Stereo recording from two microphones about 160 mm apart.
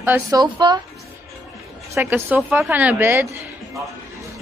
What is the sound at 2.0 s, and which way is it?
A woman's voice, 15° right (ahead or behind).